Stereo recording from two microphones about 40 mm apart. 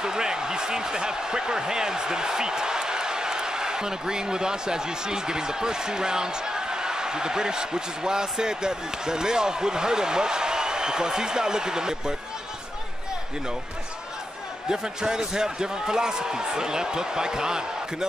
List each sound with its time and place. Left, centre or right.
0.0 s speech: centre
14.7 s speech: centre